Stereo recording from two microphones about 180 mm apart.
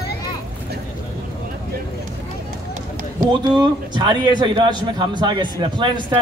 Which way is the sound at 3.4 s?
25° right (ahead or behind).